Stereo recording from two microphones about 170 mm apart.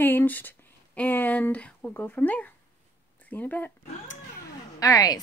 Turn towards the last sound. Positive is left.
turn(degrees=20)  # may be behind; listen again after turning